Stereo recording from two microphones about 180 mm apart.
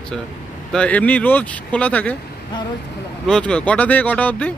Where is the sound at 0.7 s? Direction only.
10° left (ahead or behind).